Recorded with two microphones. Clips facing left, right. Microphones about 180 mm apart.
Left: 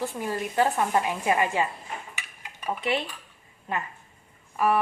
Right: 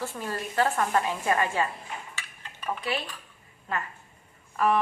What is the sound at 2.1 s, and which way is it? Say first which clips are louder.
Dishes: left 1 dB; 10° left (ahead or behind).